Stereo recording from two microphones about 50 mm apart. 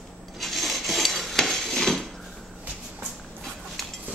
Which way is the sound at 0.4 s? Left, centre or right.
Centre.